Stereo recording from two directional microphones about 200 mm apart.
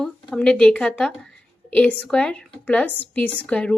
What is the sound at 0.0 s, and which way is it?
A woman's voice, 5° left (ahead or behind).